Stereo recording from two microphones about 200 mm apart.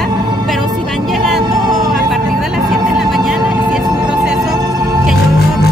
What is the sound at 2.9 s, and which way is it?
Music, centre (ahead or behind).